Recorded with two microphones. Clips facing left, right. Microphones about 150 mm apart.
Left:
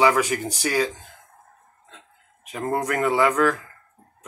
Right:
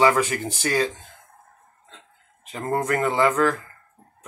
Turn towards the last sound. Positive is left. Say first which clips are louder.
# even
turn(degrees=10)  # may be behind; listen again after turning